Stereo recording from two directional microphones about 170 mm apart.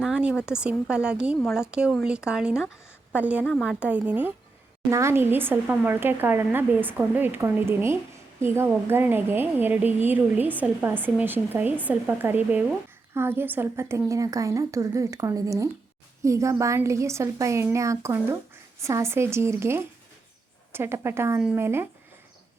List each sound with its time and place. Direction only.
0.0 s a woman's voice: 5° right (ahead or behind)